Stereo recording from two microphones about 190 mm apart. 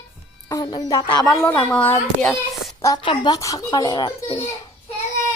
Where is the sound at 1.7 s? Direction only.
5° left (ahead or behind); by 4.5 s 25° left (ahead or behind).